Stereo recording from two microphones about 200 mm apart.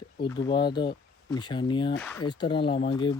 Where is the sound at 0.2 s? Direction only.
20° left (ahead or behind).